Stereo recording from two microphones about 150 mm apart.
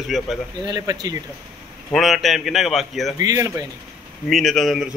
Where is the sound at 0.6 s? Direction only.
25° right (ahead or behind).